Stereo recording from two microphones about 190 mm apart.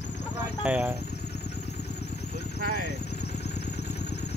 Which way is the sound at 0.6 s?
5° right (ahead or behind).